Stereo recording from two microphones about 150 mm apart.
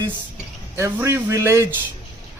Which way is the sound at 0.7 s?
20° right (ahead or behind).